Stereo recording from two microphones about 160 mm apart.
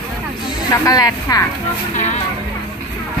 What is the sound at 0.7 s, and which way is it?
Speech, 20° left (ahead or behind).